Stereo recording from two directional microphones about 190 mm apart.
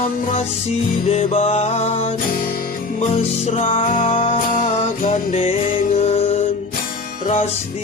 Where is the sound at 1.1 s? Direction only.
35° left (ahead or behind).